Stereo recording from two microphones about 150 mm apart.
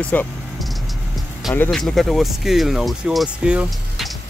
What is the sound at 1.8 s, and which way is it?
Speech, centre (ahead or behind).